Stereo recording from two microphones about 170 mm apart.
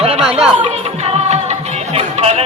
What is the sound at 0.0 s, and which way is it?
Chatter, 35° right (ahead or behind).